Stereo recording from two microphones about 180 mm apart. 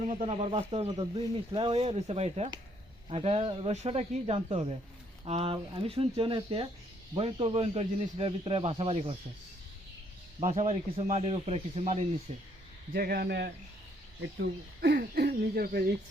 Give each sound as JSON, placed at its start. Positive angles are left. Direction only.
{"t": 0.0, "sound": "a man's voice", "side_deg": -40}
{"t": 10.4, "sound": "a man's voice", "side_deg": -40}
{"t": 12.9, "sound": "speech", "side_deg": -60}